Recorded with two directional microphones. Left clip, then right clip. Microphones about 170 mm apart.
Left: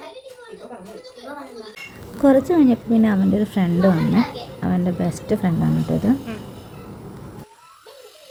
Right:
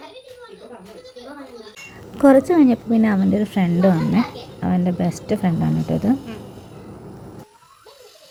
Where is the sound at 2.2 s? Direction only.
20° right (ahead or behind).